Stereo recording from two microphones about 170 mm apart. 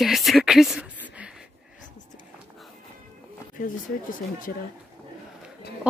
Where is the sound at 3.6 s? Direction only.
55° left (ahead or behind).